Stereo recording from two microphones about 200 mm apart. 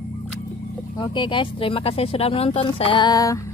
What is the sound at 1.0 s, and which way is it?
Speech, 25° left (ahead or behind).